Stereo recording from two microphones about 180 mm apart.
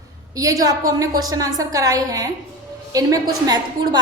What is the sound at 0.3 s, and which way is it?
A woman's voice, 20° right (ahead or behind).